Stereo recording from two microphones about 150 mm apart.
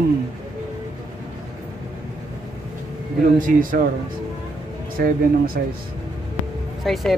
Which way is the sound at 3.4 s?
65° right (ahead or behind).